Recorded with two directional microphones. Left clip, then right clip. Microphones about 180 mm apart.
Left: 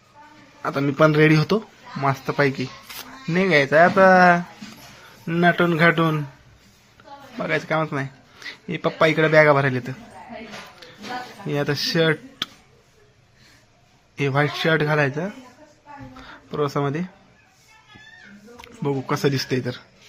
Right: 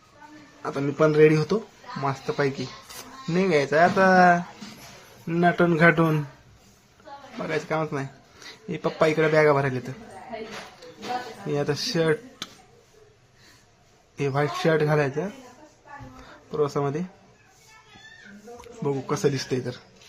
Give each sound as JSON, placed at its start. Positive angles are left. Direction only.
{"t": 0.6, "sound": "a man's voice", "side_deg": 15}
{"t": 7.3, "sound": "a man's voice", "side_deg": 10}
{"t": 11.4, "sound": "speech", "side_deg": 5}
{"t": 14.2, "sound": "a man's voice", "side_deg": 10}
{"t": 16.5, "sound": "a man's voice", "side_deg": 5}
{"t": 18.6, "sound": "speech", "side_deg": 10}